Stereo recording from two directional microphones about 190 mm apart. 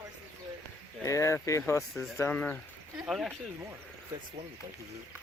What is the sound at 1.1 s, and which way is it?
Speech, 15° left (ahead or behind).